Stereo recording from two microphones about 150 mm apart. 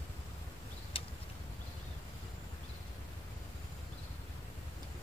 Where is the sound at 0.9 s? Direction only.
40° left (ahead or behind).